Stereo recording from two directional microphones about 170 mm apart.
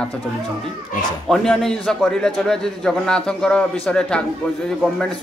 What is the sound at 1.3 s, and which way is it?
A man's voice, centre (ahead or behind).